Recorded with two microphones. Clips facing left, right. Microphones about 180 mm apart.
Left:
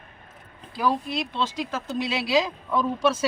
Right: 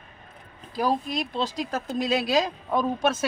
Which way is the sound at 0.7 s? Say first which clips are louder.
Even; 40° right (ahead or behind).